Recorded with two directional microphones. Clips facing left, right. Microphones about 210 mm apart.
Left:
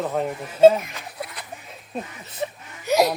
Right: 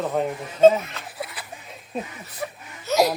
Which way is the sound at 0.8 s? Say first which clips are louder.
Right 1 dB; 15° left (ahead or behind).